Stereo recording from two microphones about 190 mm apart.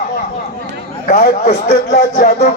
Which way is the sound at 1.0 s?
40° left (ahead or behind).